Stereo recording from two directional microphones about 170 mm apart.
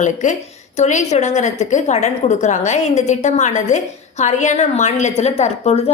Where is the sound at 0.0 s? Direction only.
45° left (ahead or behind).